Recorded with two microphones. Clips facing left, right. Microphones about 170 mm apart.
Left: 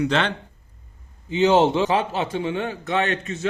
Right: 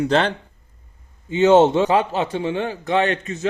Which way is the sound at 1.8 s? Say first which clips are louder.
Right 3 dB; 40° right (ahead or behind).